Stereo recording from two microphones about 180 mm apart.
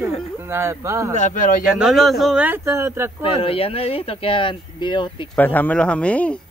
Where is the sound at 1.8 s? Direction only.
Centre (ahead or behind).